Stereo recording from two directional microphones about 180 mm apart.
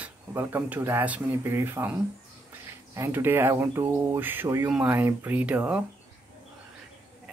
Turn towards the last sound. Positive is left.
turn(degrees=-10)  # may be behind; listen again after turning